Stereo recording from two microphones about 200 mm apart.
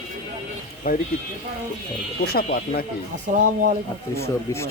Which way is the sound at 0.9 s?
45° left (ahead or behind).